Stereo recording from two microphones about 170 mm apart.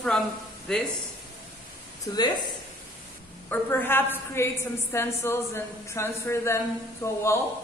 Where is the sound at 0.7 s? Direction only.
5° left (ahead or behind).